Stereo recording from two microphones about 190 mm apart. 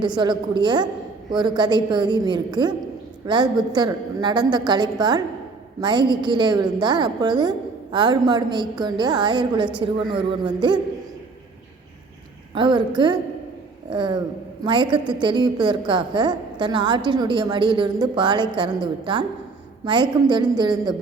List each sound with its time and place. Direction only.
0.0 s a woman's voice: 25° right (ahead or behind)
12.5 s a woman's voice: 25° right (ahead or behind)